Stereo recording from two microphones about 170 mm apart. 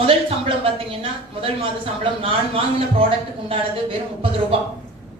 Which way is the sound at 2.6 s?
35° right (ahead or behind).